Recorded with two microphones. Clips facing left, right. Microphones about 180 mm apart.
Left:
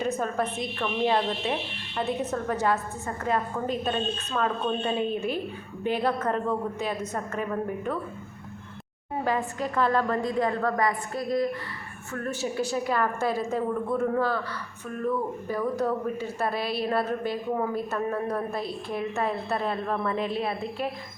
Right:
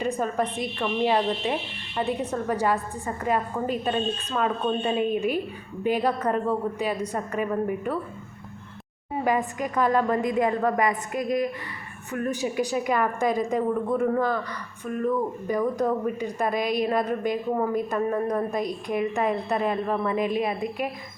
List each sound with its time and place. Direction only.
0.0 s a sound: 10° right (ahead or behind)
0.6 s speech: 10° right (ahead or behind)
9.2 s speech: 15° right (ahead or behind)